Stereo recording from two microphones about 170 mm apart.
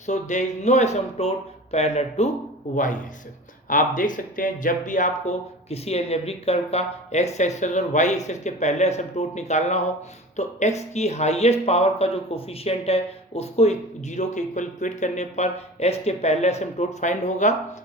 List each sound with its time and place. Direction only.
0.0 s speech: 45° left (ahead or behind)